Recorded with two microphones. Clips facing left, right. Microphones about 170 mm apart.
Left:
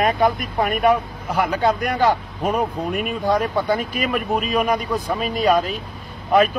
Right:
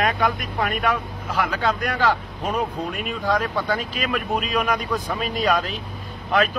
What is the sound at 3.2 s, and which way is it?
Speech, 15° left (ahead or behind).